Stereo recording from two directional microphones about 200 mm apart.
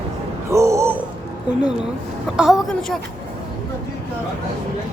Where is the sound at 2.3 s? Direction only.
Centre (ahead or behind).